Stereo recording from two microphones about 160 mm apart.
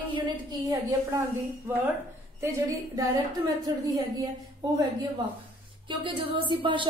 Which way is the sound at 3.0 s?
25° right (ahead or behind).